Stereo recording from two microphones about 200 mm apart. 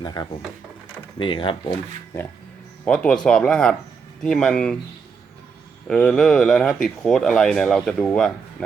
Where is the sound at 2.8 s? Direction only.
5° left (ahead or behind).